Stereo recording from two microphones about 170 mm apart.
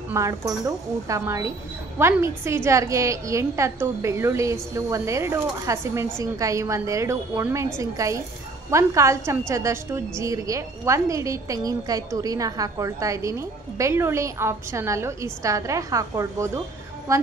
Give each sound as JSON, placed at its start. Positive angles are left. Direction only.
{"t": 0.1, "sound": "a woman's voice", "side_deg": -20}